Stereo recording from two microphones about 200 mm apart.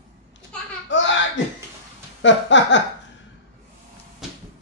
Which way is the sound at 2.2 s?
65° left (ahead or behind).